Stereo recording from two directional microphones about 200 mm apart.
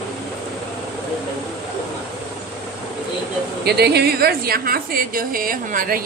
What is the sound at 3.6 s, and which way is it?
A woman's voice, 55° right (ahead or behind).